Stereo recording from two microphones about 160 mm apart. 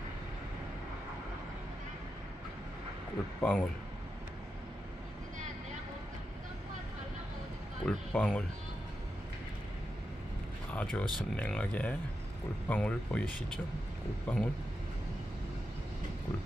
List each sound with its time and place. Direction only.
3.3 s speech: 10° left (ahead or behind)
7.8 s speech: 5° left (ahead or behind)
10.7 s speech: 10° left (ahead or behind)
14.3 s speech: 10° left (ahead or behind)